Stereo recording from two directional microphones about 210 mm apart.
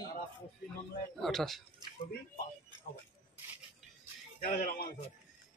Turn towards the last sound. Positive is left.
turn(degrees=40)  # may be behind; listen again after turning